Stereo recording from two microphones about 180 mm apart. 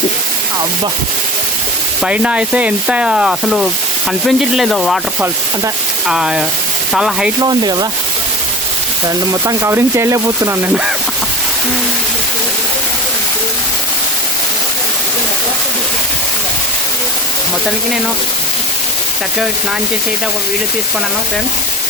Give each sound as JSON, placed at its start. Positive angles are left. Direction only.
{"t": 2.0, "sound": "speech", "side_deg": -5}
{"t": 6.1, "sound": "speech", "side_deg": -5}
{"t": 7.4, "sound": "rub", "side_deg": -25}
{"t": 9.3, "sound": "speech", "side_deg": -15}